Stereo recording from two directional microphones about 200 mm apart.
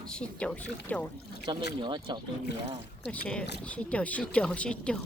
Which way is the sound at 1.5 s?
20° right (ahead or behind).